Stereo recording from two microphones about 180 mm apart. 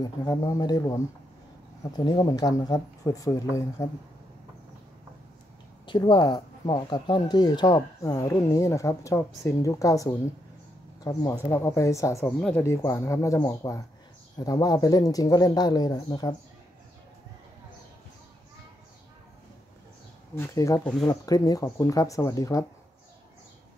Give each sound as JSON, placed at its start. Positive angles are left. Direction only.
{"t": 0.0, "sound": "speech", "side_deg": 20}
{"t": 5.9, "sound": "speech", "side_deg": 25}
{"t": 20.3, "sound": "speech", "side_deg": 20}